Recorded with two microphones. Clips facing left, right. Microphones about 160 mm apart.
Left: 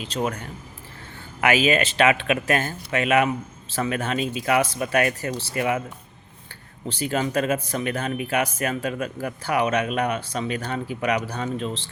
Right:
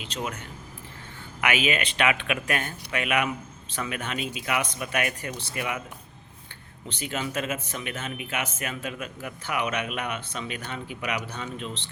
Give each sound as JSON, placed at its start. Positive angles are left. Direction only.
{"t": 0.0, "sound": "speech", "side_deg": 40}
{"t": 1.4, "sound": "speech", "side_deg": 35}
{"t": 6.8, "sound": "speech", "side_deg": 35}